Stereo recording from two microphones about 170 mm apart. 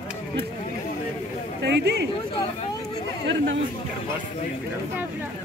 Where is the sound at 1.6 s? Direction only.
90° right.